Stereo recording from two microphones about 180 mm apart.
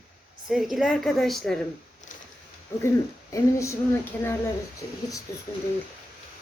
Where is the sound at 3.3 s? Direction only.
15° left (ahead or behind).